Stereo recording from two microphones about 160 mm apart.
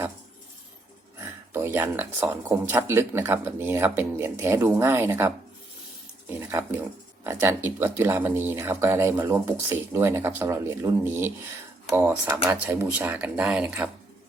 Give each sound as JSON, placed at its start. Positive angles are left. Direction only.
{"t": 1.5, "sound": "speech", "side_deg": -15}
{"t": 6.2, "sound": "a sound", "side_deg": -15}
{"t": 7.3, "sound": "speech", "side_deg": -15}